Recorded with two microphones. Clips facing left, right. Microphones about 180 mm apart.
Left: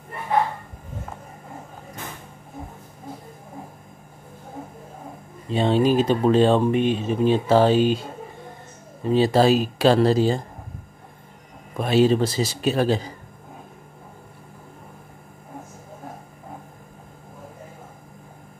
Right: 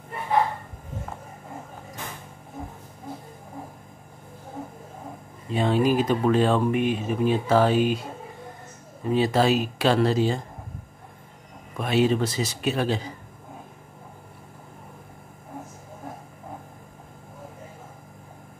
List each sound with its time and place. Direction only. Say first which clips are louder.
5.5 s speech: left 3 dB; 25° left (ahead or behind)
9.1 s speech: left 4 dB; 30° left (ahead or behind)
11.7 s speech: left 4 dB; 35° left (ahead or behind)